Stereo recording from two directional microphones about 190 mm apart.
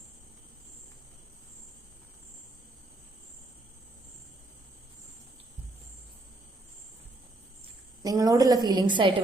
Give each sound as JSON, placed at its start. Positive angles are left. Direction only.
{"t": 8.0, "sound": "a woman's voice", "side_deg": -20}